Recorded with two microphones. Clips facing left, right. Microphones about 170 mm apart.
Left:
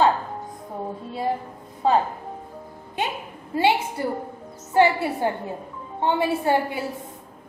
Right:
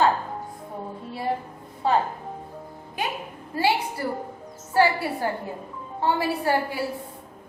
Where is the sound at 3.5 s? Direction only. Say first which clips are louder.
Left 3 dB; 20° left (ahead or behind).